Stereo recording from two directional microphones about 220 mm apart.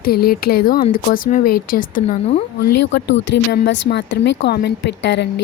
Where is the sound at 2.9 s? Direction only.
55° left (ahead or behind).